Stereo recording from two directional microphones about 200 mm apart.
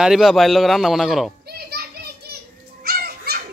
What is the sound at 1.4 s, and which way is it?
Children playing, 50° right (ahead or behind).